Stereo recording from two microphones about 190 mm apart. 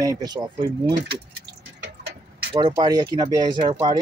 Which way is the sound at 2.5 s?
25° right (ahead or behind).